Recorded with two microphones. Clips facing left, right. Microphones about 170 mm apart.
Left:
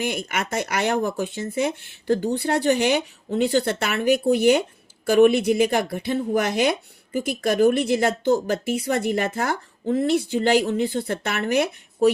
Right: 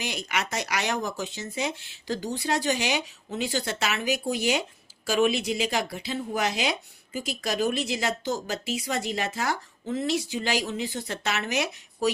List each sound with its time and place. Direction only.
0.0 s speech: 55° left (ahead or behind)